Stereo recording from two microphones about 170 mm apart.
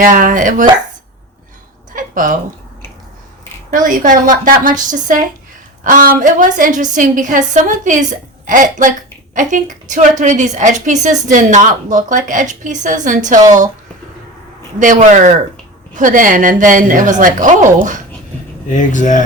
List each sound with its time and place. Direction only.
0.0 s a woman's voice: 55° right (ahead or behind)
1.9 s a sound: 50° right (ahead or behind)
3.7 s a woman's voice: 50° right (ahead or behind)
14.8 s a woman's voice: 45° right (ahead or behind)
18.7 s speech: 45° left (ahead or behind)